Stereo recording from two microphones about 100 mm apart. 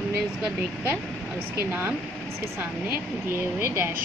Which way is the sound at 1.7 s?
20° right (ahead or behind).